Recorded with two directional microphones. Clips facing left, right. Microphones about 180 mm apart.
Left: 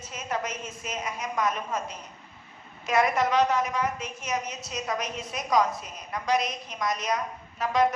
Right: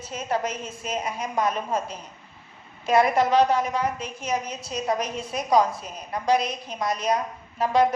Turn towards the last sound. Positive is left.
turn(degrees=-30)  # may be behind; listen again after turning